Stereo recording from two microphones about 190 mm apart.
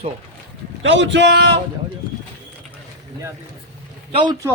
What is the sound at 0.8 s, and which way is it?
Speech, 70° right (ahead or behind).